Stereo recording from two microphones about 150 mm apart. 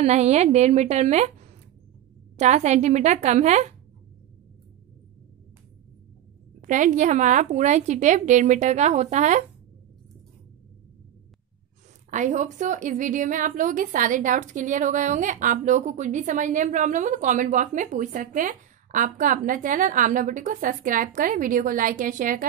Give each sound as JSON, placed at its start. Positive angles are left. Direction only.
{"t": 0.0, "sound": "a woman's voice", "side_deg": -50}
{"t": 2.3, "sound": "a woman's voice", "side_deg": -50}
{"t": 6.6, "sound": "a woman's voice", "side_deg": -60}
{"t": 12.1, "sound": "a woman's voice", "side_deg": -55}